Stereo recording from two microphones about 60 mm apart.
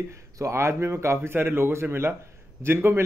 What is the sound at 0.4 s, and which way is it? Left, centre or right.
A man's voice, right.